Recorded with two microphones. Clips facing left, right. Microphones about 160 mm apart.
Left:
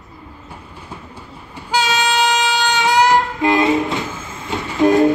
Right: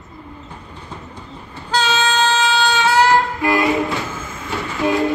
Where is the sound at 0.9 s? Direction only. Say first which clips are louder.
Right 1 dB; 10° left (ahead or behind).